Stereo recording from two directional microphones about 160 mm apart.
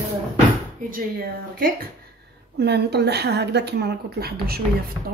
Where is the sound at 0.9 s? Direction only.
65° right (ahead or behind).